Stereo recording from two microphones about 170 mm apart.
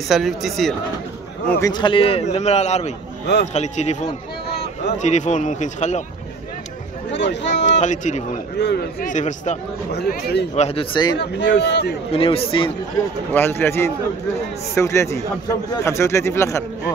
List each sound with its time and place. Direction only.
0.1 s speech: centre (ahead or behind)
1.6 s a man's voice: 25° left (ahead or behind); by 4.0 s 40° left (ahead or behind)
4.5 s a sound: 70° left (ahead or behind)
4.9 s speech: 45° left (ahead or behind)
7.1 s speech: 90° left
7.8 s speech: 45° left (ahead or behind)
8.5 s a man's voice: 85° left
9.0 s speech: 45° left (ahead or behind)
9.9 s speech: 70° left (ahead or behind)
10.5 s a man's voice: 35° left (ahead or behind)
11.1 s speech: 90° left
12.1 s a man's voice: 35° left (ahead or behind)
13.3 s speech: 15° left (ahead or behind)